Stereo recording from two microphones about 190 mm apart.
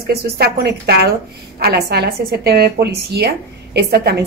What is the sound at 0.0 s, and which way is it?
A woman's voice, 55° right (ahead or behind).